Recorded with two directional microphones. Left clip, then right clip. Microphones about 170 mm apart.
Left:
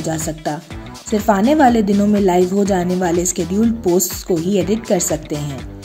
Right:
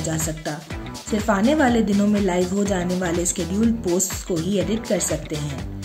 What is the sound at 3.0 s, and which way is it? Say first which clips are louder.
Speech: left 6 dB; 25° left (ahead or behind).